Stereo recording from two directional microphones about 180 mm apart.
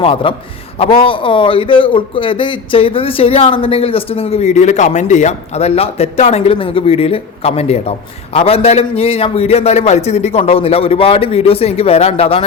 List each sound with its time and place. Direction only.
0.0 s a man's voice: 30° left (ahead or behind)